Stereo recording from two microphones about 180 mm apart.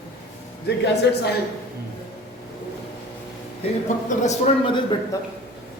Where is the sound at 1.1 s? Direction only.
75° left (ahead or behind).